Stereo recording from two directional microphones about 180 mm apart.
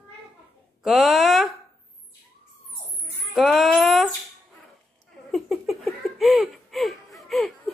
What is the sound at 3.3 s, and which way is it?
Speech, centre (ahead or behind).